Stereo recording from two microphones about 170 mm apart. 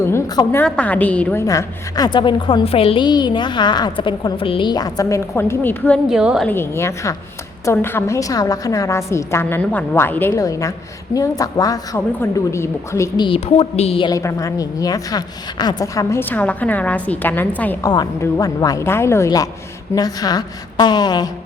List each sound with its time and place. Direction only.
0.1 s a woman's voice: 15° left (ahead or behind)
6.1 s a woman's voice: 5° right (ahead or behind)
6.5 s a woman's voice: 15° left (ahead or behind)
13.2 s a woman's voice: 35° left (ahead or behind)
14.1 s a woman's voice: 20° left (ahead or behind)
17.9 s a woman's voice: 20° left (ahead or behind)